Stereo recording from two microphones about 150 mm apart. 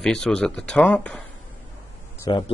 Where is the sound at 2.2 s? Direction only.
30° left (ahead or behind).